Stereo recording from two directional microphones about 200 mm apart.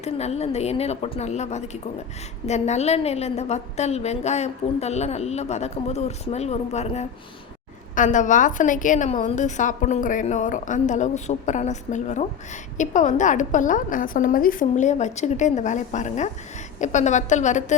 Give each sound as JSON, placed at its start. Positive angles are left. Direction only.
{"t": 0.0, "sound": "a woman's voice", "side_deg": 35}